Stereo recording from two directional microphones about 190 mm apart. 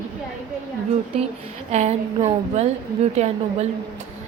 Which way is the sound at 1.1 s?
30° right (ahead or behind).